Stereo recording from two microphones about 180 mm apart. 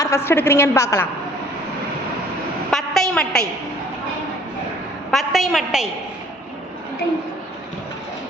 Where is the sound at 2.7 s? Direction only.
Centre (ahead or behind).